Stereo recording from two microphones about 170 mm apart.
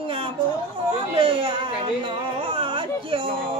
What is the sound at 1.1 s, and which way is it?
Speech, 30° right (ahead or behind).